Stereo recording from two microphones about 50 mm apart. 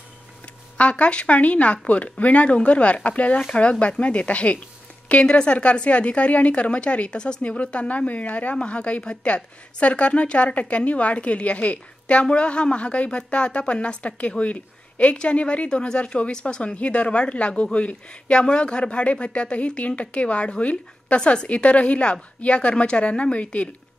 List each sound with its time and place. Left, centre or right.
0.7 s a woman's voice: left